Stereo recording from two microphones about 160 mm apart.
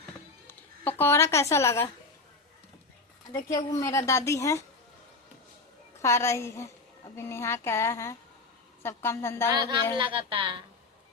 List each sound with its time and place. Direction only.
0.4 s a woman's voice: 15° left (ahead or behind)
3.3 s a woman's voice: 25° left (ahead or behind)
6.0 s speech: 15° left (ahead or behind)
9.6 s speech: 25° right (ahead or behind)